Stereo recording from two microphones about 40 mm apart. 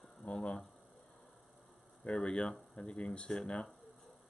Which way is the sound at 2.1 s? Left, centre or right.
Left.